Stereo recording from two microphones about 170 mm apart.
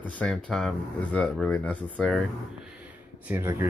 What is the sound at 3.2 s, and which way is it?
Speech, 15° right (ahead or behind).